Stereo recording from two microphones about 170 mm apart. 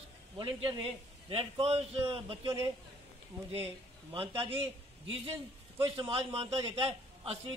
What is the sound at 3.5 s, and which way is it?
Speech, 35° right (ahead or behind).